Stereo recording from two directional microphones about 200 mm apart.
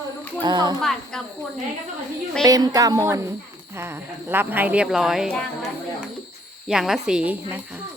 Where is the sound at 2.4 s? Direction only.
20° right (ahead or behind); by 5.5 s centre (ahead or behind).